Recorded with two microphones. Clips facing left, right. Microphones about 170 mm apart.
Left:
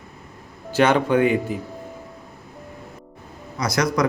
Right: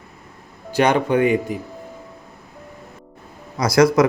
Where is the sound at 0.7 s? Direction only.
15° right (ahead or behind).